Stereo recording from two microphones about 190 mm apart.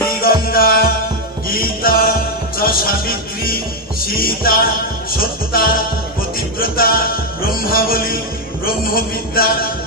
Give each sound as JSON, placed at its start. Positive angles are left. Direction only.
{"t": 0.5, "sound": "music", "side_deg": 50}
{"t": 4.0, "sound": "a man's voice", "side_deg": 50}
{"t": 6.6, "sound": "music", "side_deg": 50}
{"t": 8.6, "sound": "a man's voice", "side_deg": 50}